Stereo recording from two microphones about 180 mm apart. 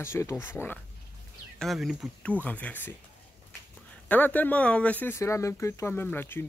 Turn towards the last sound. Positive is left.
turn(degrees=10)  # may be behind; listen again after turning